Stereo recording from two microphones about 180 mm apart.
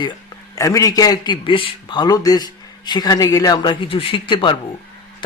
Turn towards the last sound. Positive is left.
turn(degrees=30)  # may be behind; listen again after turning